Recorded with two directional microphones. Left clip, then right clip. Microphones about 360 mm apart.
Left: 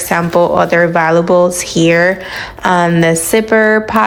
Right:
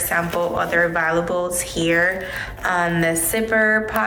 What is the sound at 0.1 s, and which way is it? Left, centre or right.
Speech, centre.